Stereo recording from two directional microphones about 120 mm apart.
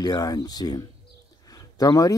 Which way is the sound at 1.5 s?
30° left (ahead or behind).